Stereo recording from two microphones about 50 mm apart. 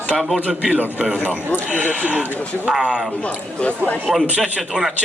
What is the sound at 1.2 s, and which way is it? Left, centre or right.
Speech, left.